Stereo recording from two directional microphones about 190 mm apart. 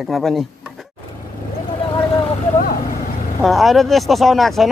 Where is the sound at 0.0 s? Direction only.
Centre (ahead or behind).